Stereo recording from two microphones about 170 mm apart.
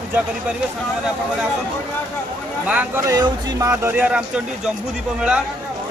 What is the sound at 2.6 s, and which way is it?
Speech, 10° right (ahead or behind).